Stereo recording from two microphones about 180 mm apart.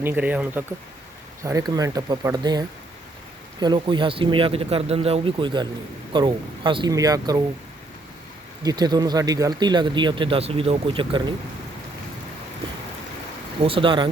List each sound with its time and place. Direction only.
0.0 s speech: 10° right (ahead or behind)
8.6 s speech: 25° right (ahead or behind)
13.7 s speech: 30° right (ahead or behind)